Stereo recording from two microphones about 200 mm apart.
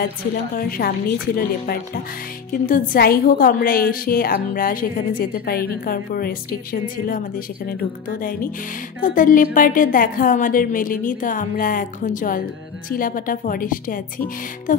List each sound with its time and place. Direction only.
0.6 s a woman's voice: 45° left (ahead or behind)